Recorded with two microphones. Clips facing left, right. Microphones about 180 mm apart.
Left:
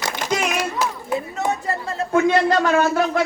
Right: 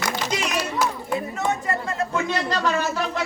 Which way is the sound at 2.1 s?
50° left (ahead or behind).